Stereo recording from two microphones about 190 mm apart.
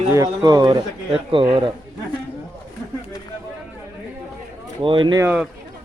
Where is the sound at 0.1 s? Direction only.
20° right (ahead or behind).